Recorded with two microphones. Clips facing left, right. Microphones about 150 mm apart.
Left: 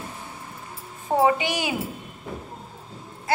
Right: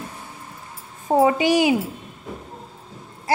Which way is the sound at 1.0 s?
40° right (ahead or behind).